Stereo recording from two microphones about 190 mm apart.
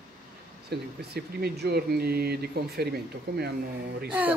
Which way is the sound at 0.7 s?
55° right (ahead or behind).